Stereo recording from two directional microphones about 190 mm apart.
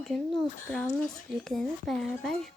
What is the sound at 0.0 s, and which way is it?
A child's voice, centre (ahead or behind).